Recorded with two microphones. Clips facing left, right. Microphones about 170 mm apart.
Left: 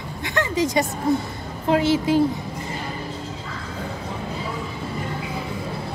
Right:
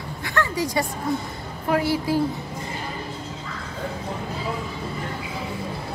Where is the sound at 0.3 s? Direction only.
20° left (ahead or behind).